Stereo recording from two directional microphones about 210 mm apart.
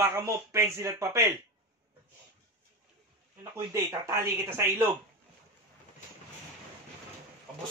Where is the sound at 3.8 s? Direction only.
15° right (ahead or behind).